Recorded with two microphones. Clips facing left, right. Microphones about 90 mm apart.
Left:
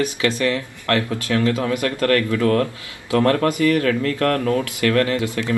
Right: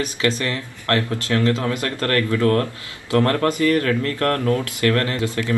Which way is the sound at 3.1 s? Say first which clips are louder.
Left 1 dB; 20° left (ahead or behind).